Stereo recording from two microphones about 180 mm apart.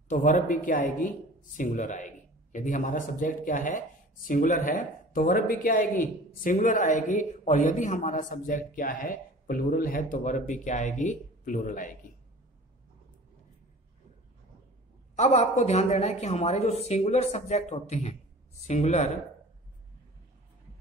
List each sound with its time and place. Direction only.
0.1 s speech: 45° left (ahead or behind)
15.1 s a woman's voice: 40° left (ahead or behind)